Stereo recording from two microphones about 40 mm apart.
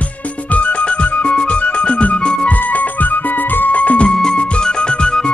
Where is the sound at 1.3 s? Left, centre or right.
Left.